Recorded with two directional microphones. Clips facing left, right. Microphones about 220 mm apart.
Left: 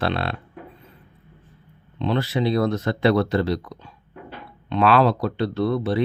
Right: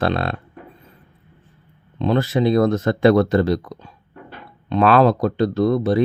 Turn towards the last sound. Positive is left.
turn(degrees=-45)  # may be behind; listen again after turning